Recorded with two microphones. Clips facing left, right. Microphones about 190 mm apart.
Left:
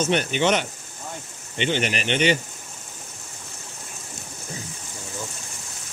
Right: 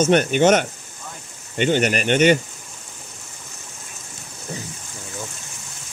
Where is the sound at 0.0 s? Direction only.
50° right (ahead or behind).